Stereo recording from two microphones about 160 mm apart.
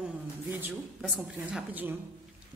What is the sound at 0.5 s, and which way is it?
A man's voice, 5° right (ahead or behind).